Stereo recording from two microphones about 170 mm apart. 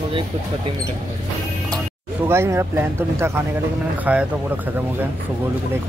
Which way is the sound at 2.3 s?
15° right (ahead or behind).